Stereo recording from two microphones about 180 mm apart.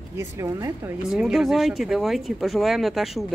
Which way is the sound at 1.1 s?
Centre (ahead or behind).